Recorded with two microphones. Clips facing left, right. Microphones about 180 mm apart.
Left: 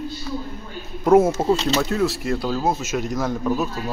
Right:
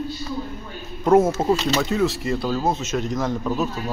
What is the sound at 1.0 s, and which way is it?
A man's voice, 5° left (ahead or behind).